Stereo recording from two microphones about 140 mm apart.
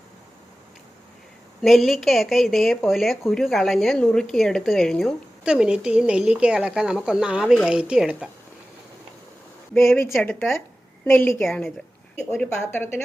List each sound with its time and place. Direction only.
1.6 s a woman's voice: centre (ahead or behind)
10.1 s a woman's voice: 5° left (ahead or behind)
11.0 s a woman's voice: 15° left (ahead or behind)